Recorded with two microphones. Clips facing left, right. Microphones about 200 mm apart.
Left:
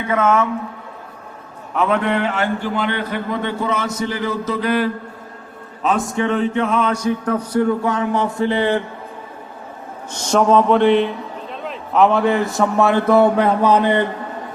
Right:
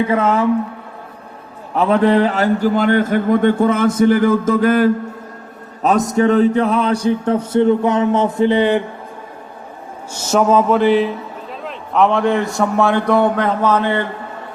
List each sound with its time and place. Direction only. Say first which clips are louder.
0.0 s mantra: right 2 dB; 30° right (ahead or behind)
1.7 s speech: right 5 dB; 35° right (ahead or behind)
5.8 s mantra: right 5 dB; 40° right (ahead or behind); by 8.3 s 20° right (ahead or behind)
8.4 s speech: right 4 dB; 20° right (ahead or behind)
10.1 s a man's voice: right 1 dB; 5° right (ahead or behind); by 14.0 s 15° left (ahead or behind)